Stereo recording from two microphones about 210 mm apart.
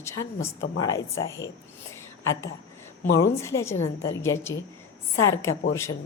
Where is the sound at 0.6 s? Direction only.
65° left (ahead or behind).